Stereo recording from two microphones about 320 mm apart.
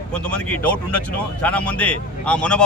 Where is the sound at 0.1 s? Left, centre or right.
Centre.